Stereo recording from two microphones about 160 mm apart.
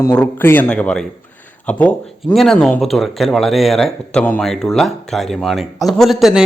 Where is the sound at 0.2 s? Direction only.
10° left (ahead or behind).